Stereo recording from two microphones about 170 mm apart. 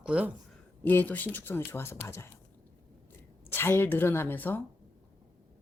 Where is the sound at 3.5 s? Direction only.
15° left (ahead or behind).